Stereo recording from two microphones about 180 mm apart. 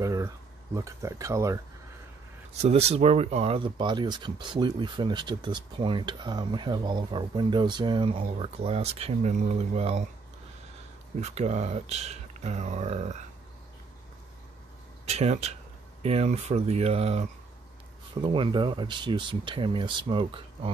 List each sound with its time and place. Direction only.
0.0 s a sound: 15° right (ahead or behind)
0.7 s speech: 15° right (ahead or behind)
2.6 s speech: 35° right (ahead or behind)
11.1 s speech: 40° right (ahead or behind)
15.0 s speech: 35° right (ahead or behind)